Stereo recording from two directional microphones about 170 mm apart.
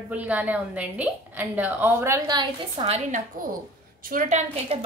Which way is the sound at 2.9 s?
45° right (ahead or behind).